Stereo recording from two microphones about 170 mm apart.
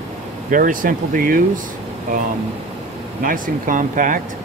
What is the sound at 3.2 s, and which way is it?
Speech, 55° right (ahead or behind).